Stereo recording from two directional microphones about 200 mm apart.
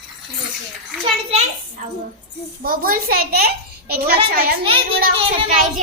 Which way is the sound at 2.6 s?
45° right (ahead or behind).